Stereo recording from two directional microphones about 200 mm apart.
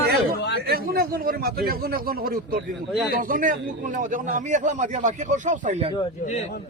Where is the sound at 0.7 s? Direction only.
50° right (ahead or behind).